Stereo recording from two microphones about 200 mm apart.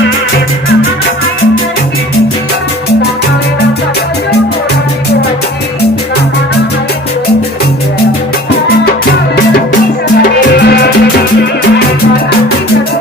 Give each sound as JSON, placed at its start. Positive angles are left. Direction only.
{"t": 10.6, "sound": "music", "side_deg": 55}